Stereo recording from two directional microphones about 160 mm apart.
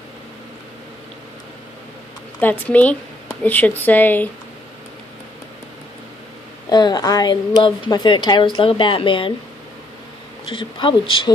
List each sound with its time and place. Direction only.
2.4 s speech: 10° left (ahead or behind)
6.7 s a woman's voice: 25° left (ahead or behind)
10.4 s speech: 30° left (ahead or behind)